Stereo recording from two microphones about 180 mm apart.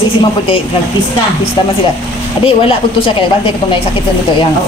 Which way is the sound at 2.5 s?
30° left (ahead or behind).